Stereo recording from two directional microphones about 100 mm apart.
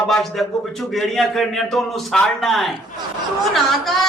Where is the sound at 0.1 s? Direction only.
Centre (ahead or behind).